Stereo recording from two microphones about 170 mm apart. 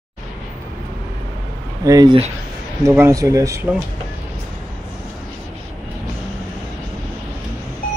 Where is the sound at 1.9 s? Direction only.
20° right (ahead or behind).